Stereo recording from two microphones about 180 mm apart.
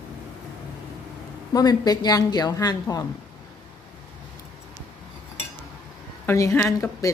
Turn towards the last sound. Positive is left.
turn(degrees=15)  # may be behind; listen again after turning